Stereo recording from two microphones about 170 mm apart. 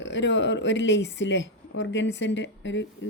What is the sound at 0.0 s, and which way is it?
A woman's voice, 90° left.